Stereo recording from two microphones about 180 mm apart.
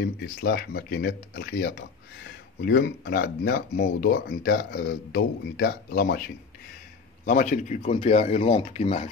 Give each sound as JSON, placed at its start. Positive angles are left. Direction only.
{"t": 0.0, "sound": "speech", "side_deg": 65}
{"t": 7.2, "sound": "speech", "side_deg": 45}